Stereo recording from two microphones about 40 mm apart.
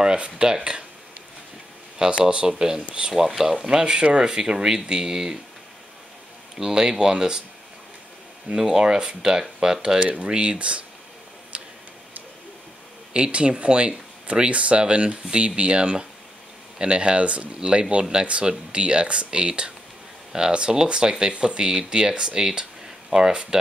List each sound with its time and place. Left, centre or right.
0.0 s speech: right
2.0 s speech: centre
3.1 s speech: centre
6.5 s speech: centre
8.5 s speech: centre; by 10.8 s right
11.5 s tick-tock: right
13.1 s speech: right